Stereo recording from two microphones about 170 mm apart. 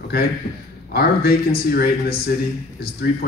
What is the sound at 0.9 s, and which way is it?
A man's voice, 65° left (ahead or behind).